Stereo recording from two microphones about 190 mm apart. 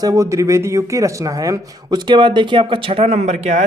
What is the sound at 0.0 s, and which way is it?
Speech, 15° right (ahead or behind).